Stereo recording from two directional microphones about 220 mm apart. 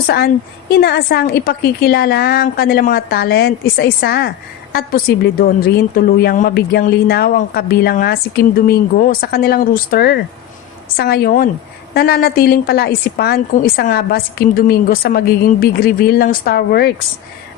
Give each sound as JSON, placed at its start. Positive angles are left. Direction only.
{"t": 0.7, "sound": "a woman's voice", "side_deg": 45}